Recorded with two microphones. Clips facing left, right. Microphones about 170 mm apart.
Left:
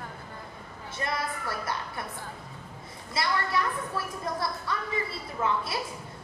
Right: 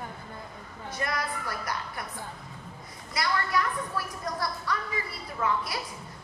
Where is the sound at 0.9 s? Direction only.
25° left (ahead or behind).